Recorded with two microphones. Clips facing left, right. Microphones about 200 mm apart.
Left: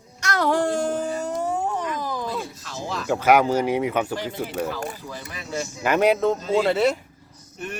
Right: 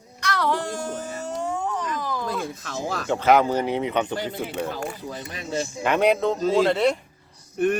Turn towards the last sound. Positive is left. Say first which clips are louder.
# right 12 dB
turn(degrees=-55)  # may be behind; listen again after turning